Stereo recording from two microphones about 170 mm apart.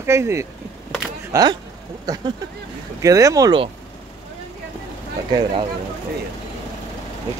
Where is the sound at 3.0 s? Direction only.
20° right (ahead or behind).